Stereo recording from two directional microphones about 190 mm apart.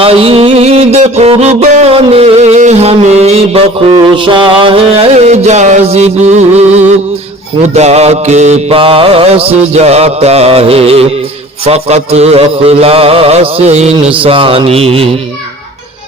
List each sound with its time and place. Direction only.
0.0 s music: 30° right (ahead or behind)
7.7 s mantra: 35° right (ahead or behind)